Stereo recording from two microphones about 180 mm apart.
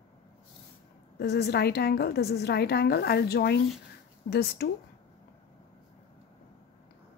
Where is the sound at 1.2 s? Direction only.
60° left (ahead or behind).